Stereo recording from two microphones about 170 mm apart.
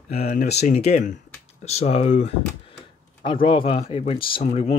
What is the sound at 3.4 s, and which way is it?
Speech, 30° left (ahead or behind).